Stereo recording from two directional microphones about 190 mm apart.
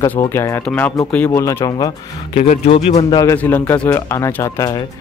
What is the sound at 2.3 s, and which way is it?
Speech, 35° left (ahead or behind).